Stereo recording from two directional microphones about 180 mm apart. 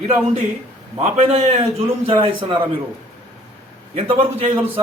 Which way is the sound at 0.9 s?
40° right (ahead or behind).